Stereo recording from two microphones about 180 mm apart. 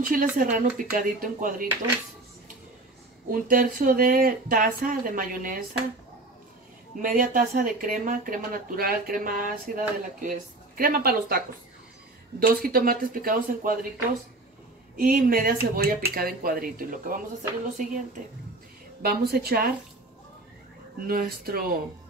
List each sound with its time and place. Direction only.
0.0 s speech: 50° right (ahead or behind)
3.3 s speech: 50° right (ahead or behind)
7.0 s speech: 50° right (ahead or behind)
15.0 s speech: 50° right (ahead or behind)
19.0 s a woman's voice: 60° right (ahead or behind)
21.1 s speech: 55° right (ahead or behind)